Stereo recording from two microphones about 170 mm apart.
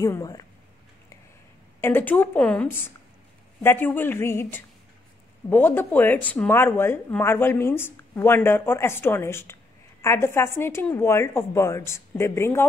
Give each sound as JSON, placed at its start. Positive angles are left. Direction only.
{"t": 0.0, "sound": "speech", "side_deg": 20}
{"t": 1.8, "sound": "speech", "side_deg": 10}